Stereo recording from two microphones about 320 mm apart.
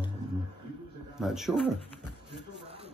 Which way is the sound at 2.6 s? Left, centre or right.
Centre.